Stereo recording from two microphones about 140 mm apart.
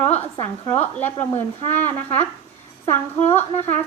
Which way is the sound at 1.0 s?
15° left (ahead or behind).